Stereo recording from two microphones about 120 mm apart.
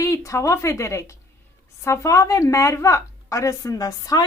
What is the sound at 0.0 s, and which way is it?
A woman's voice, 25° left (ahead or behind).